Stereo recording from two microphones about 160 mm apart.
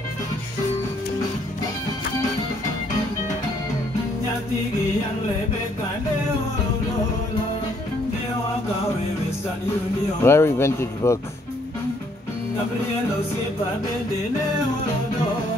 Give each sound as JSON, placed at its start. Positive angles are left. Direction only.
{"t": 10.2, "sound": "speech", "side_deg": 15}